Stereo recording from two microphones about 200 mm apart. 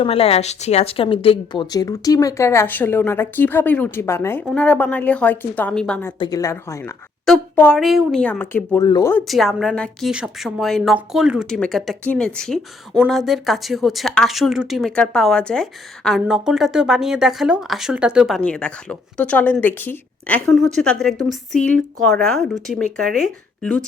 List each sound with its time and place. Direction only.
0.0 s a woman's voice: 30° left (ahead or behind); by 6.1 s 10° left (ahead or behind)
6.1 s a woman's voice: 20° left (ahead or behind)
9.2 s a woman's voice: centre (ahead or behind)